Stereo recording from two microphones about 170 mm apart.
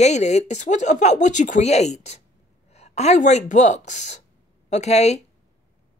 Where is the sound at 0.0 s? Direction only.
40° left (ahead or behind).